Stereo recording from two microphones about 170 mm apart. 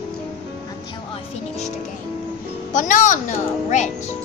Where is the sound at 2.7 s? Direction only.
50° left (ahead or behind).